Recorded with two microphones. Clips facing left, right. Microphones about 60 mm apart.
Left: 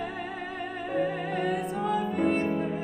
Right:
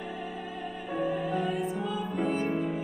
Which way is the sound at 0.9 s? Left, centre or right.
Left.